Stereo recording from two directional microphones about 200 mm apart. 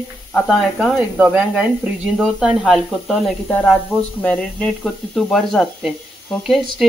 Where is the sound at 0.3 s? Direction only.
5° left (ahead or behind).